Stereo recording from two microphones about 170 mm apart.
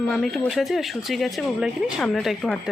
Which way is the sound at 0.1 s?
Centre (ahead or behind).